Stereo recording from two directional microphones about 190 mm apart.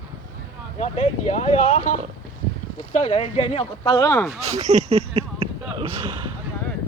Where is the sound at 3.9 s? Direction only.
15° left (ahead or behind).